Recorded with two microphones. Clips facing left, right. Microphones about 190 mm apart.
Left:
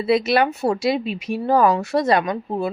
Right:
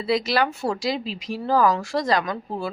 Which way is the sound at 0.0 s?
25° left (ahead or behind).